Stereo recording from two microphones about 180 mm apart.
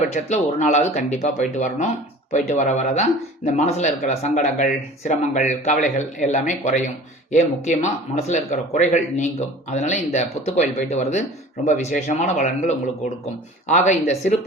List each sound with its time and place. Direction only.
0.1 s speech: 40° left (ahead or behind)